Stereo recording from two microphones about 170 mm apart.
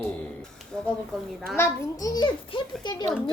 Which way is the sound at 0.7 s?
5° left (ahead or behind).